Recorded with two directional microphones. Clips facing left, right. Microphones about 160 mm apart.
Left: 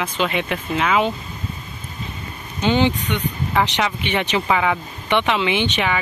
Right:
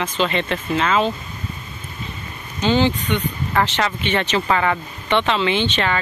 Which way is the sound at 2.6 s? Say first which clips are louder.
Even; 15° left (ahead or behind).